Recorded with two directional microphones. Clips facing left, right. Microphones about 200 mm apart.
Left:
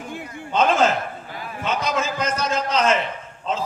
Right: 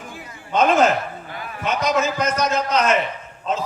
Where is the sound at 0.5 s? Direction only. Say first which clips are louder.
Right 2 dB; 25° left (ahead or behind).